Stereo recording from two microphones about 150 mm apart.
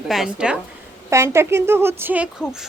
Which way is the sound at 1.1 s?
20° right (ahead or behind).